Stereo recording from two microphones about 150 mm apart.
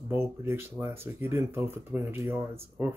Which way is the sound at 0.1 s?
15° right (ahead or behind).